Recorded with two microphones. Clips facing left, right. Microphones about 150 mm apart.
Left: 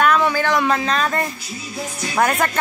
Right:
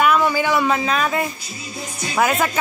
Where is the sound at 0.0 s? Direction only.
5° right (ahead or behind).